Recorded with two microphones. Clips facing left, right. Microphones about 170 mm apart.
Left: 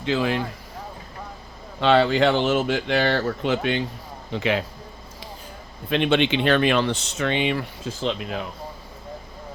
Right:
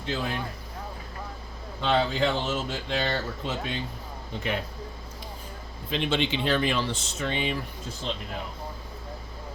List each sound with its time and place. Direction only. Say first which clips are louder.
0.0 s speech: left 8 dB; 90° left
1.8 s speech: left 7 dB; 75° left (ahead or behind)
4.3 s speech: left 7 dB; 90° left
5.9 s speech: left 7 dB; 65° left (ahead or behind); by 8.4 s 90° left